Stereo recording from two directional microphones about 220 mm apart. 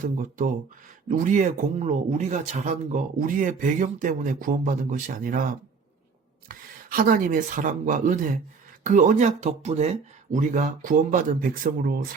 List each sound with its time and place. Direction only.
0.0 s speech: 40° right (ahead or behind)
6.5 s speech: 40° right (ahead or behind)